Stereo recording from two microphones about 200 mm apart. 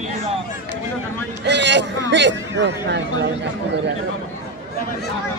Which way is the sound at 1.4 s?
60° right (ahead or behind).